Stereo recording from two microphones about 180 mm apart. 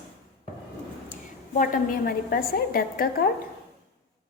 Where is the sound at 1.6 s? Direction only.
55° left (ahead or behind).